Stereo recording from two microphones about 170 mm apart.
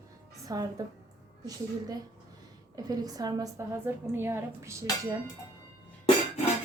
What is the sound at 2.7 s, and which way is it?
A woman's voice, 20° right (ahead or behind).